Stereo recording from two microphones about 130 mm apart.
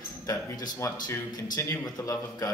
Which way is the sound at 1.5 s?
25° left (ahead or behind).